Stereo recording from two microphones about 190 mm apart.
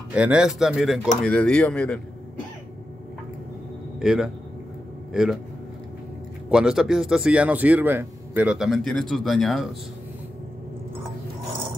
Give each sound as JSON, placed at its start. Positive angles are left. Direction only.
{"t": 0.1, "sound": "a man's voice", "side_deg": -5}
{"t": 4.0, "sound": "a man's voice", "side_deg": 0}
{"t": 6.5, "sound": "a man's voice", "side_deg": -5}